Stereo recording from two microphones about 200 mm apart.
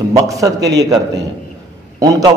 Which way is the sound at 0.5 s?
60° right (ahead or behind).